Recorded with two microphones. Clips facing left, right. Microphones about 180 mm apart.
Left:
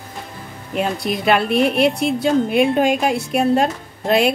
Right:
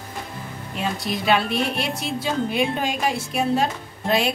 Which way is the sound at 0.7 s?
55° left (ahead or behind).